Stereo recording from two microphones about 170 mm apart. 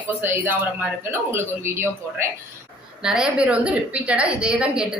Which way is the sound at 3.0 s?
5° right (ahead or behind).